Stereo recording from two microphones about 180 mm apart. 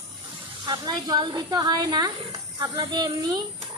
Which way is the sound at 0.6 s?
25° right (ahead or behind).